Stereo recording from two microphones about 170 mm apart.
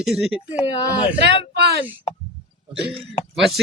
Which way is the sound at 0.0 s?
Centre (ahead or behind).